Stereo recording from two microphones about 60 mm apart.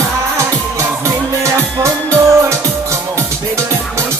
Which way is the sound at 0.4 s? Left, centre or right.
Right.